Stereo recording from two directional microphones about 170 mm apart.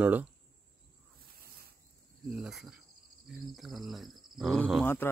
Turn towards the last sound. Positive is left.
turn(degrees=15)  # may be behind; listen again after turning